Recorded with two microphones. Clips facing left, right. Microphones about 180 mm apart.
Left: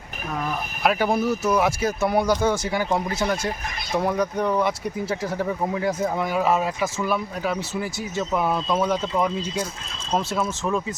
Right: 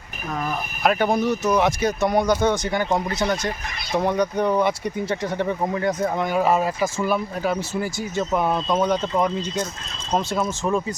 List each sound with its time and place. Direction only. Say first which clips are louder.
0.8 s speech: right 1 dB; 5° left (ahead or behind)